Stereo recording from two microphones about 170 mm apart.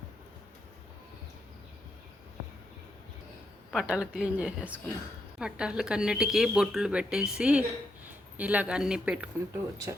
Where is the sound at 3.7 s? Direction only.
5° right (ahead or behind).